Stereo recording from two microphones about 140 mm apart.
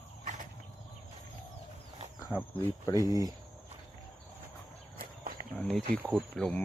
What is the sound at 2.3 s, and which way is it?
Speech, 15° left (ahead or behind).